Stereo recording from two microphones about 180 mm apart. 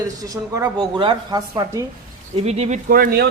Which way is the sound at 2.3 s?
35° right (ahead or behind).